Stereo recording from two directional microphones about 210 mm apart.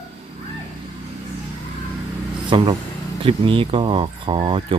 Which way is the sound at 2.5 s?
25° right (ahead or behind).